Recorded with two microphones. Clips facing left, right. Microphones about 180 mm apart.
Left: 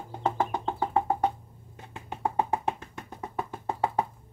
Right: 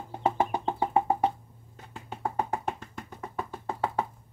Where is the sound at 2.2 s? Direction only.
20° left (ahead or behind).